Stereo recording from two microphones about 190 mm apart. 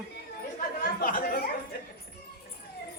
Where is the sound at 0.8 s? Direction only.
45° left (ahead or behind).